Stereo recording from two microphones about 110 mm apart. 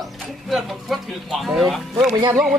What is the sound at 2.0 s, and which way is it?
Speech, 35° right (ahead or behind).